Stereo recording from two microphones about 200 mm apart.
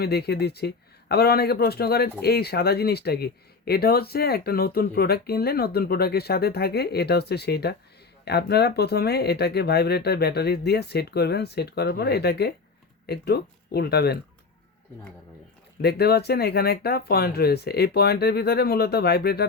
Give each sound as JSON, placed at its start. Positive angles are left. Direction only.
{"t": 0.0, "sound": "speech", "side_deg": 55}
{"t": 15.8, "sound": "speech", "side_deg": 55}